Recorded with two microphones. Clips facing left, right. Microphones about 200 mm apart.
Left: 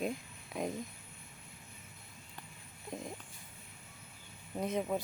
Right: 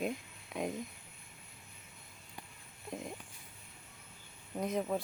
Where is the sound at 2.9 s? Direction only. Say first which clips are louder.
Even; centre (ahead or behind).